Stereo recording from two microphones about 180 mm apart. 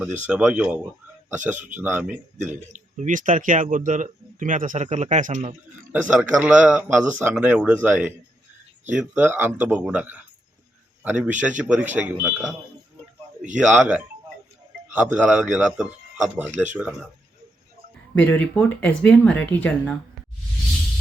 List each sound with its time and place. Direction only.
0.0 s speech: 10° right (ahead or behind)
2.7 s speech: 45° right (ahead or behind)
5.9 s speech: 5° right (ahead or behind)
13.5 s speech: 10° right (ahead or behind)
18.1 s speech: 10° left (ahead or behind)